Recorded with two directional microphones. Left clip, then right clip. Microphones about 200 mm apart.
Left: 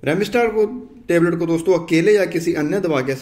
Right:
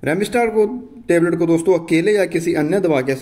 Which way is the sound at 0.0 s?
25° right (ahead or behind).